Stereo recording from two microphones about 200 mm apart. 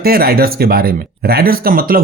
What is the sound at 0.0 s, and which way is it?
Speech, 50° right (ahead or behind).